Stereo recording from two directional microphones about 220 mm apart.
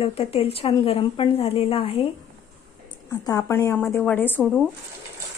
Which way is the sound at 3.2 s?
15° left (ahead or behind).